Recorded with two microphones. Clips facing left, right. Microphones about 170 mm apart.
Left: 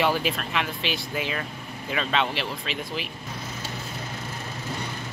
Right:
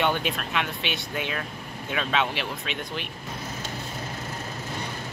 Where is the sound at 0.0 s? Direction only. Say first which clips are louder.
Left 1 dB; centre (ahead or behind).